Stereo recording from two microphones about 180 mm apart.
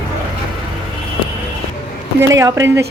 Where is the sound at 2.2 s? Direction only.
15° right (ahead or behind).